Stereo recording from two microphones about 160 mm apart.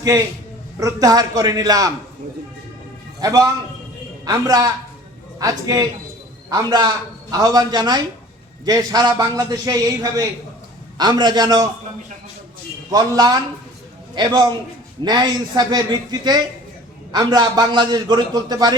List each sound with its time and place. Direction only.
0.8 s a man's voice: 20° right (ahead or behind)
3.2 s a man's voice: 20° right (ahead or behind)
12.9 s a man's voice: 25° right (ahead or behind)